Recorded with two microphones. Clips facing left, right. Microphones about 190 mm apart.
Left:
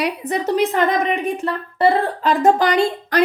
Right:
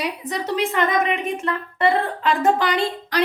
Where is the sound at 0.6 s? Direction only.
40° left (ahead or behind).